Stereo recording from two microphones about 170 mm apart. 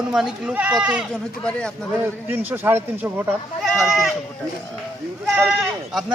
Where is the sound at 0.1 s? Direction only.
5° right (ahead or behind).